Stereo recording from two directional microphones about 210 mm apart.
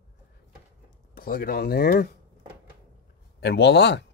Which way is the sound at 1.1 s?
45° left (ahead or behind).